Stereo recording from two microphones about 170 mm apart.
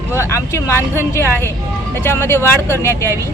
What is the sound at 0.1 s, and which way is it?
Speech, 15° left (ahead or behind).